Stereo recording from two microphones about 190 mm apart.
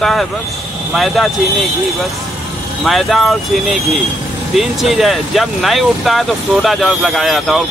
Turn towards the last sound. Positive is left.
turn(degrees=0)  # may be behind; listen again after turning